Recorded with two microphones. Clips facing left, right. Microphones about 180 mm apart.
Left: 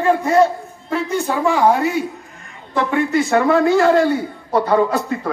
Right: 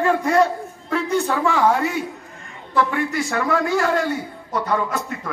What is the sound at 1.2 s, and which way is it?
Speech, 15° left (ahead or behind).